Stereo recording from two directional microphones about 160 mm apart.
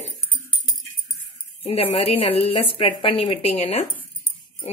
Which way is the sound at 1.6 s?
35° left (ahead or behind).